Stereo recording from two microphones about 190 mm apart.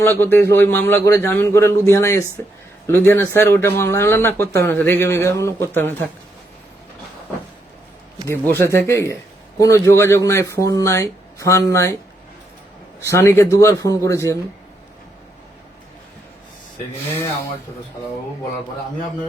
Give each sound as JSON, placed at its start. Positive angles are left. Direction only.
{"t": 0.0, "sound": "speech", "side_deg": 10}
{"t": 8.3, "sound": "speech", "side_deg": 15}
{"t": 13.0, "sound": "speech", "side_deg": 15}